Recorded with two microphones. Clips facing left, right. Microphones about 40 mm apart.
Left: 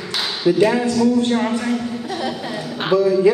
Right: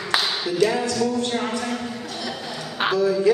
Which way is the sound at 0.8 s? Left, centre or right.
Centre.